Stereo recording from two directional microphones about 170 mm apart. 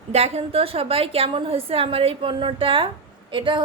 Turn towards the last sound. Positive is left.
turn(degrees=-30)  # may be behind; listen again after turning